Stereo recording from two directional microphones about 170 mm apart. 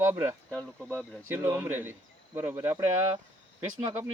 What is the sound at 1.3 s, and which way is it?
Speech, 10° right (ahead or behind).